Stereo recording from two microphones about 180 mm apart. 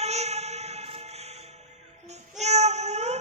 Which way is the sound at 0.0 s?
35° right (ahead or behind).